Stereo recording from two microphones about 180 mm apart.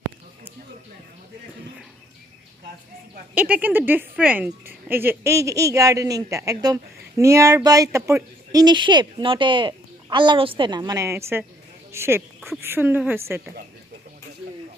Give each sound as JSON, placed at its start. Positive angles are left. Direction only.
{"t": 3.3, "sound": "speech", "side_deg": -10}